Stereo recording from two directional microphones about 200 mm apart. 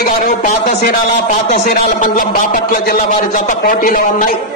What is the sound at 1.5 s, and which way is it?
Speech, 45° left (ahead or behind).